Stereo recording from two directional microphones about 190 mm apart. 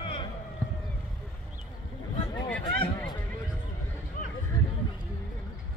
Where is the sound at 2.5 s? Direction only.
5° left (ahead or behind).